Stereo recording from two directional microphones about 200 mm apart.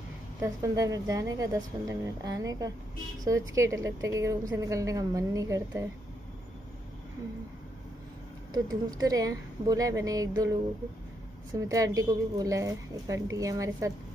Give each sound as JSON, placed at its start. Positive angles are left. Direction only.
{"t": 0.4, "sound": "a woman's voice", "side_deg": -15}
{"t": 8.5, "sound": "a woman's voice", "side_deg": -20}